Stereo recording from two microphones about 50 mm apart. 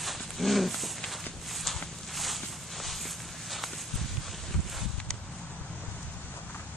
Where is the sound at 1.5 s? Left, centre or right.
Centre.